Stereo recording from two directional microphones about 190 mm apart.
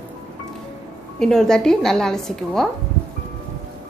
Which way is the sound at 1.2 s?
5° left (ahead or behind).